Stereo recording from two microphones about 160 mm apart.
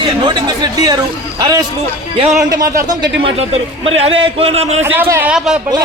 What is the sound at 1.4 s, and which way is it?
Speech, 25° right (ahead or behind).